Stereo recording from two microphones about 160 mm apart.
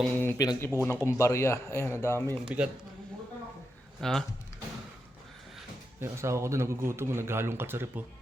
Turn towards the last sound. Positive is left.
turn(degrees=-15)  # may be behind; listen again after turning